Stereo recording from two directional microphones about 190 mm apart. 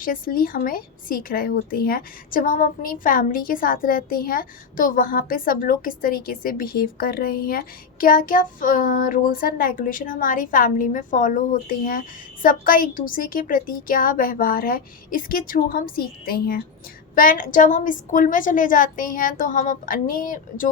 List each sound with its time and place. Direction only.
0.0 s a child's voice: 50° left (ahead or behind)